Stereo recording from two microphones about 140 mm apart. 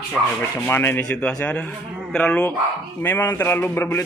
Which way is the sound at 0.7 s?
15° left (ahead or behind).